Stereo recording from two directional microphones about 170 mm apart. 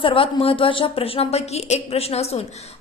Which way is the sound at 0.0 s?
30° left (ahead or behind).